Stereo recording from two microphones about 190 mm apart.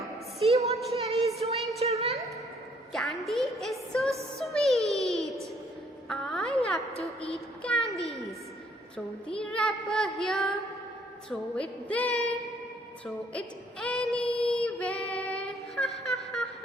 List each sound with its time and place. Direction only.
0.4 s a sound: 35° right (ahead or behind)
2.9 s music: centre (ahead or behind)
4.4 s a sound: centre (ahead or behind)
7.6 s music: 5° left (ahead or behind)
9.0 s a woman's voice: 5° left (ahead or behind)
11.3 s female singing: 5° left (ahead or behind)